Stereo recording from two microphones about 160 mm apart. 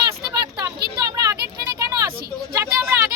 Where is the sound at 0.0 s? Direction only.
20° right (ahead or behind).